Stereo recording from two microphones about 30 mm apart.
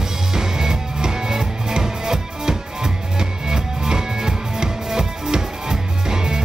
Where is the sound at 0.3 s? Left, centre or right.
Centre.